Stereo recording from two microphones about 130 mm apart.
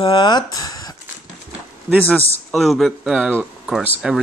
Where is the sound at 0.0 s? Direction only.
35° left (ahead or behind).